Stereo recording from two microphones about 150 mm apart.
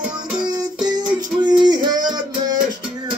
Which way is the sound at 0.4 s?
25° right (ahead or behind).